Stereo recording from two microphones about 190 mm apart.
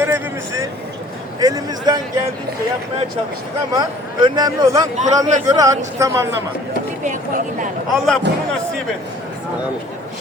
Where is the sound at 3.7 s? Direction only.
25° right (ahead or behind).